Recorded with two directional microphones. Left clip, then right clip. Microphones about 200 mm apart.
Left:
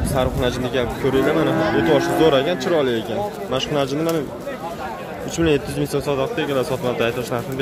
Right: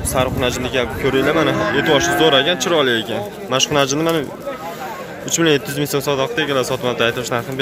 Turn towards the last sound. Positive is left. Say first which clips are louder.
# right 3 dB
turn(degrees=-5)  # may be behind; listen again after turning